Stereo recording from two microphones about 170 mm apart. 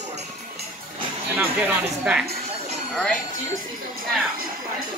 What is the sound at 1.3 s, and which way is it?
Speech, 10° right (ahead or behind).